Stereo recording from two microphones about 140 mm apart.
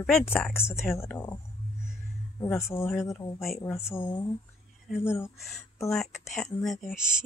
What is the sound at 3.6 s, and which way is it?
Speech, 20° left (ahead or behind).